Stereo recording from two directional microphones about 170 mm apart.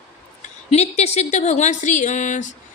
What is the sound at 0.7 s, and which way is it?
Speech, 40° left (ahead or behind).